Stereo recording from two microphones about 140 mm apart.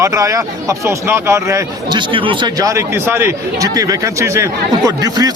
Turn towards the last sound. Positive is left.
turn(degrees=-30)  # may be behind; listen again after turning